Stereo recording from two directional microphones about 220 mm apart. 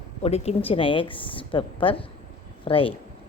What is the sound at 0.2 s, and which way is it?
A woman's voice, 30° left (ahead or behind).